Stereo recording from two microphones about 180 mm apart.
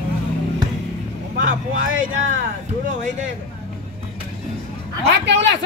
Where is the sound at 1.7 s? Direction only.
90° right.